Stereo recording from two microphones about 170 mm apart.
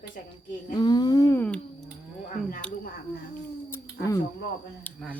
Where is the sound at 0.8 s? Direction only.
25° left (ahead or behind); by 1.6 s 10° left (ahead or behind).